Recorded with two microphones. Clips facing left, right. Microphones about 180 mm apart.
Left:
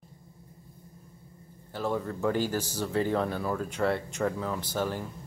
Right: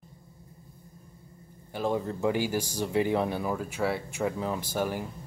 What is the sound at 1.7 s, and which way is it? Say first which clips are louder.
Speech: right 2 dB; 15° right (ahead or behind).